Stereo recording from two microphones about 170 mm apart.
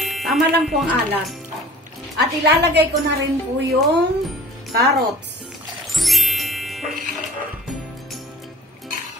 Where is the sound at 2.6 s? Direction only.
90° right.